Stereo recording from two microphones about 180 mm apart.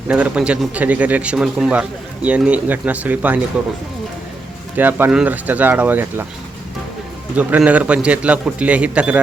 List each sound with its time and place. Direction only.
0.1 s a man's voice: 5° right (ahead or behind)
4.8 s a man's voice: 10° right (ahead or behind)
7.3 s a man's voice: 10° right (ahead or behind)